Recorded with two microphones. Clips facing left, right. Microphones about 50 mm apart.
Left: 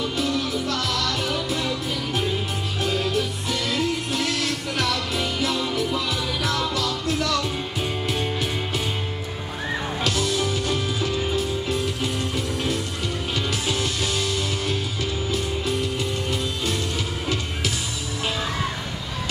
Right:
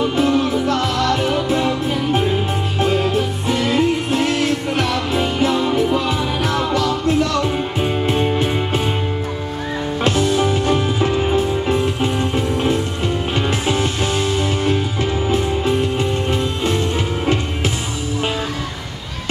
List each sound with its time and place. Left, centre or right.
0.0 s music: right
10.0 s music: right